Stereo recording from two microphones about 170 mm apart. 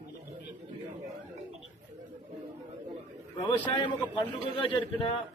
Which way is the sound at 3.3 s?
30° left (ahead or behind).